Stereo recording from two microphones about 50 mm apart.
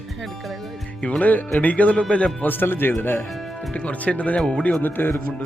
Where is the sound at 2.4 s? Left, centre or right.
Left.